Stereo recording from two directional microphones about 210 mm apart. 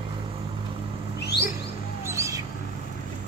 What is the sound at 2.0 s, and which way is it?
Bird, 15° right (ahead or behind).